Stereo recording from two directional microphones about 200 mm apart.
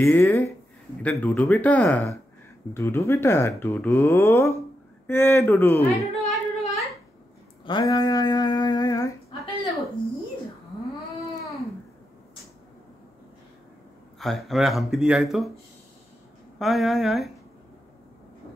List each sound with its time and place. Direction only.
0.0 s speech: 10° left (ahead or behind)
6.2 s singing: 30° left (ahead or behind)
7.6 s speech: 20° left (ahead or behind)
14.1 s speech: centre (ahead or behind)
16.5 s speech: centre (ahead or behind)